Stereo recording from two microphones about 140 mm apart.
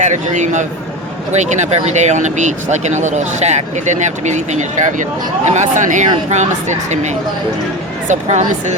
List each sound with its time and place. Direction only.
0.0 s speech: 60° right (ahead or behind)